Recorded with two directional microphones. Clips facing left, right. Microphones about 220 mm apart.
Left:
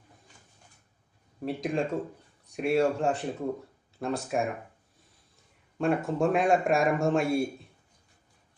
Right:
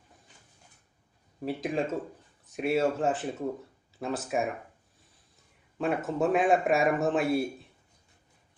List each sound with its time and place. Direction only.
1.4 s a man's voice: centre (ahead or behind)
5.7 s a man's voice: centre (ahead or behind)